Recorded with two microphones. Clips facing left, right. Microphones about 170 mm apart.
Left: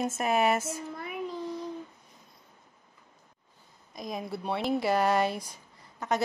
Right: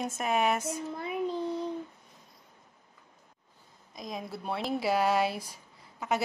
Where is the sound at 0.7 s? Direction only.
25° right (ahead or behind).